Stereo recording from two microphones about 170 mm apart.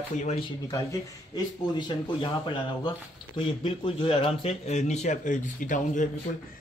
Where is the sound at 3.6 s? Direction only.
30° left (ahead or behind).